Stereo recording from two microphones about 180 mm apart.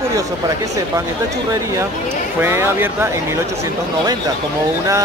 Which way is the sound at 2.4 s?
15° right (ahead or behind).